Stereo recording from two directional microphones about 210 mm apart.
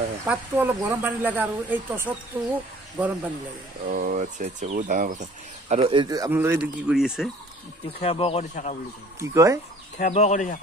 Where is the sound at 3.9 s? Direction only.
40° right (ahead or behind); by 7.3 s centre (ahead or behind).